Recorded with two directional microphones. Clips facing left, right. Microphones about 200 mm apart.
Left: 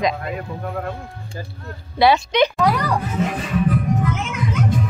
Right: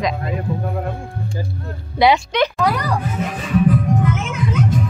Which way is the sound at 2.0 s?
15° right (ahead or behind).